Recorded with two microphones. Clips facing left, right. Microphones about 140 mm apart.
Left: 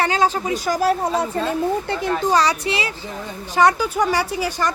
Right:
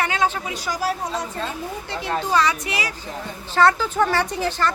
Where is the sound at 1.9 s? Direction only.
40° left (ahead or behind).